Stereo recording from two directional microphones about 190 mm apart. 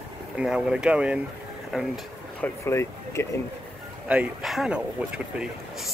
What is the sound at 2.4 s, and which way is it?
Speech, 15° left (ahead or behind).